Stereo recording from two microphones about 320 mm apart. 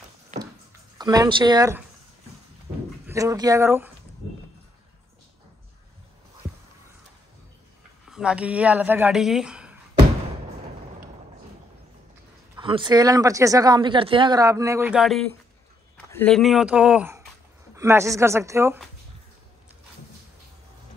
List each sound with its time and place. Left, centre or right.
0.3 s a sound: right
0.9 s speech: centre
3.1 s speech: centre
8.1 s speech: centre
12.5 s speech: centre